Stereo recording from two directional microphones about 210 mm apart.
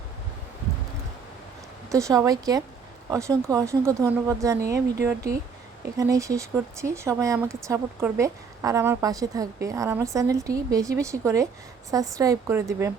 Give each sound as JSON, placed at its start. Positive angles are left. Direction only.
{"t": 1.9, "sound": "speech", "side_deg": -15}